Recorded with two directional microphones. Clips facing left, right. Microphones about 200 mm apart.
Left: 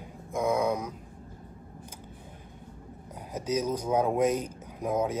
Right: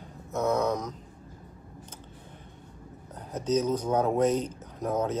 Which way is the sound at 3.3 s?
10° left (ahead or behind).